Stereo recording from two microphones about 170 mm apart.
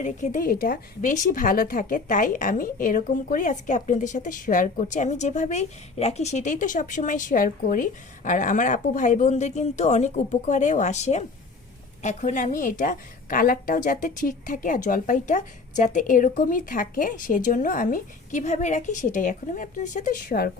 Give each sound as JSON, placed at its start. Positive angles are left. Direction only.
{"t": 0.0, "sound": "a woman's voice", "side_deg": 45}